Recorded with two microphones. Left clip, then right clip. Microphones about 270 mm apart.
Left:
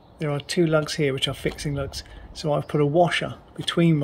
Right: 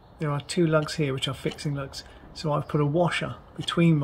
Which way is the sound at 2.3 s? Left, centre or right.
Centre.